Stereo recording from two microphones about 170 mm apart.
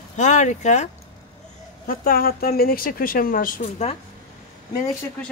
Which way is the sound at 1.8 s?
55° left (ahead or behind).